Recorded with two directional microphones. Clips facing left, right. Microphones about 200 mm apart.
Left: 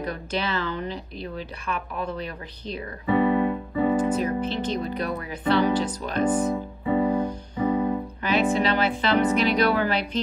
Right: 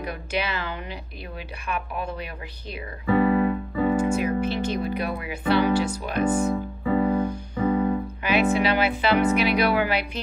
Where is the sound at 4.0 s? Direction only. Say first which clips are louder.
Right 1 dB; 10° right (ahead or behind).